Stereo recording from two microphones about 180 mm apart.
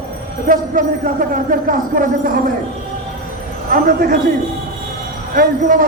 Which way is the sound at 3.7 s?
50° right (ahead or behind).